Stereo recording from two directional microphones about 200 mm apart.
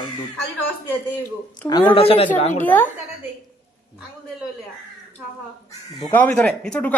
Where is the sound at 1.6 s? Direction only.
5° left (ahead or behind).